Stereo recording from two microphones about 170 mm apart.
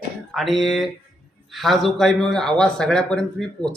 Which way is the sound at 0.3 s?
Centre (ahead or behind).